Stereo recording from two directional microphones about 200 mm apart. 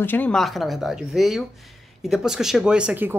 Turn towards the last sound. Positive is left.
turn(degrees=-10)  # may be behind; listen again after turning